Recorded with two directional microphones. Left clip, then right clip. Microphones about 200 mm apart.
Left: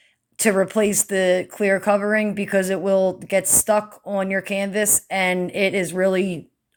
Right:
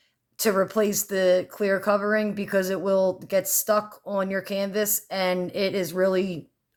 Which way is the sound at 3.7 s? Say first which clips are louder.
Left 4 dB; 10° left (ahead or behind).